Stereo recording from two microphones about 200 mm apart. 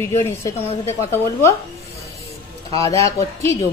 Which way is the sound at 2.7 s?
15° left (ahead or behind).